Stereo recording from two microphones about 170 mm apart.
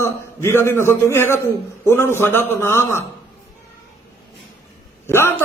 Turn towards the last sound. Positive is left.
turn(degrees=15)  # may be behind; listen again after turning